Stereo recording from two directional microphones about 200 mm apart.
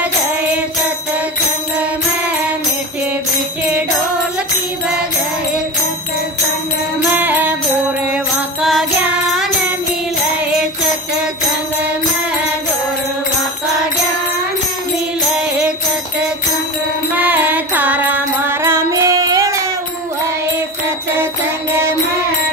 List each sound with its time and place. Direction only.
7.0 s music: 10° right (ahead or behind)
17.1 s music: 10° right (ahead or behind)